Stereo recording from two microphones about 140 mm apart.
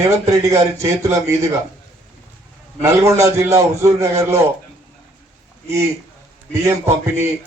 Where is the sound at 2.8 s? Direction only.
20° right (ahead or behind).